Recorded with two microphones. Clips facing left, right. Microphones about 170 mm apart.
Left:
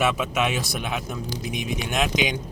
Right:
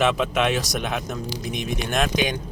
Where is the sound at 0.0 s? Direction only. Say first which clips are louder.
Right 2 dB; 10° left (ahead or behind).